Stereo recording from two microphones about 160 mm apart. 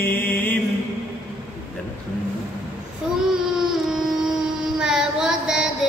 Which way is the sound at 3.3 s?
5° right (ahead or behind).